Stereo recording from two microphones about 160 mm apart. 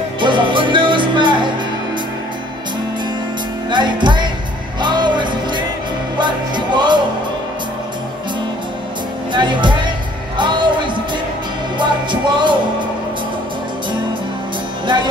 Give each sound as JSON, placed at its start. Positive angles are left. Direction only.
{"t": 0.2, "sound": "music", "side_deg": -30}
{"t": 3.7, "sound": "music", "side_deg": -30}
{"t": 9.3, "sound": "music", "side_deg": -30}
{"t": 11.8, "sound": "music", "side_deg": -30}